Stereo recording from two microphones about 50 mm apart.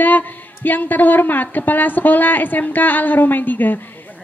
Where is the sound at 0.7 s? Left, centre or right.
Left.